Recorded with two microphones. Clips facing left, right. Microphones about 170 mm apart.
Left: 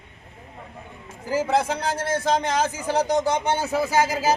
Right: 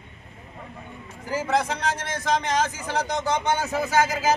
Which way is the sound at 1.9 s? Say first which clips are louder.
Left 6 dB; 30° left (ahead or behind).